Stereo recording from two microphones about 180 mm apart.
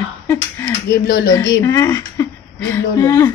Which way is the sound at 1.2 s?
20° left (ahead or behind).